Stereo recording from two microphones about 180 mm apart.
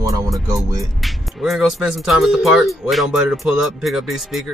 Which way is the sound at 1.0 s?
Centre (ahead or behind).